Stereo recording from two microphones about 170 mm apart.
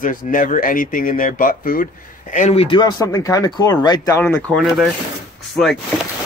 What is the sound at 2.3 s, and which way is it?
Speech, 45° left (ahead or behind).